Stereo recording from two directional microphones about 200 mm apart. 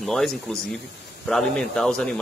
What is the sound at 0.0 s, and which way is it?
Speech, centre (ahead or behind).